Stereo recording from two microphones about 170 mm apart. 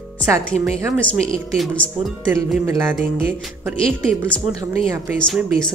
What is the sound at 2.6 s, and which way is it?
Speech, 20° right (ahead or behind).